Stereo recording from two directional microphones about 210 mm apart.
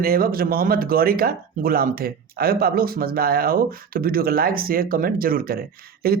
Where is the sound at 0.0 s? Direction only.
45° right (ahead or behind).